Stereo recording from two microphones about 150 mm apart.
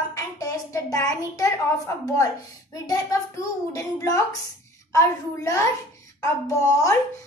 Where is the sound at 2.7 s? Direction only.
25° left (ahead or behind).